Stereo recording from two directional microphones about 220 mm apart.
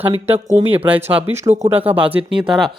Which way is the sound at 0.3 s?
25° right (ahead or behind).